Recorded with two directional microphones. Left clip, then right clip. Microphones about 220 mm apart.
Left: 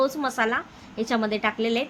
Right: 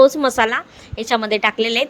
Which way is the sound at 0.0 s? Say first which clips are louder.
Right 11 dB; 30° right (ahead or behind).